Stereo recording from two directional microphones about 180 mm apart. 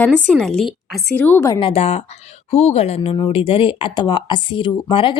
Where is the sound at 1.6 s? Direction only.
35° left (ahead or behind).